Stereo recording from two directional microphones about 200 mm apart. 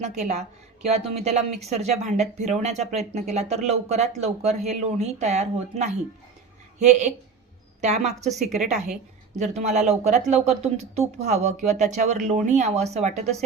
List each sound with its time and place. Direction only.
0.2 s speech: 35° right (ahead or behind)
8.4 s a woman's voice: centre (ahead or behind)
9.4 s speech: 35° right (ahead or behind)